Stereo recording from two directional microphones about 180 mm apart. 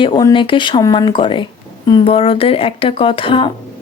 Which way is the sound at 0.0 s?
20° left (ahead or behind).